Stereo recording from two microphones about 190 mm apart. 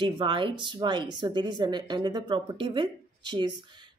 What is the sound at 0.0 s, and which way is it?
A woman's voice, 25° right (ahead or behind).